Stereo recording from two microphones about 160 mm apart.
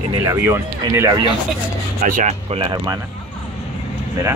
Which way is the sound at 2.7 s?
25° right (ahead or behind).